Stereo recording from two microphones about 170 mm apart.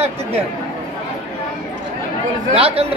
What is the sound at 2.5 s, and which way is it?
Speech, 35° right (ahead or behind).